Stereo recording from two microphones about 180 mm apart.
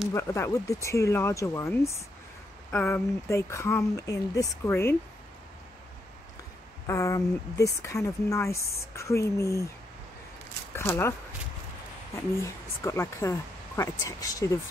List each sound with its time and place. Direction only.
0.1 s speech: 15° left (ahead or behind)
6.9 s speech: 15° left (ahead or behind)
10.7 s speech: 10° left (ahead or behind)
12.2 s speech: 15° left (ahead or behind)